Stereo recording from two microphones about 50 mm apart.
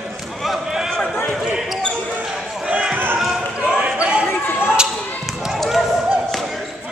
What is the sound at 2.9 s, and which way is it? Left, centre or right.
Basketball bounce, right.